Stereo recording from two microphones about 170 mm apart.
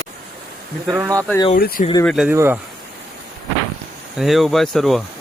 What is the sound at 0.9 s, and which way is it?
Speech, 15° right (ahead or behind).